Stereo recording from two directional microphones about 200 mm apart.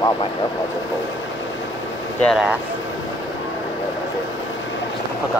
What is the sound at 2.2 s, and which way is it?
Speech, 5° right (ahead or behind).